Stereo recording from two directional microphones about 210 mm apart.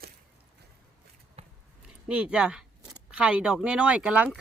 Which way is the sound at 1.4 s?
30° right (ahead or behind).